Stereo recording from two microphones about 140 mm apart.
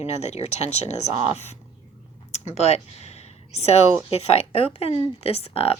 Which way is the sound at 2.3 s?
50° left (ahead or behind).